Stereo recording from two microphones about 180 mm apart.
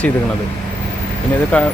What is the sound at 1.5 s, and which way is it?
Speech, 10° left (ahead or behind).